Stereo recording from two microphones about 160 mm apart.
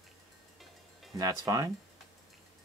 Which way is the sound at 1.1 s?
20° right (ahead or behind).